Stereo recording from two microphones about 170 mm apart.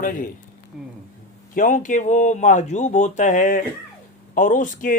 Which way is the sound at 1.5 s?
50° left (ahead or behind).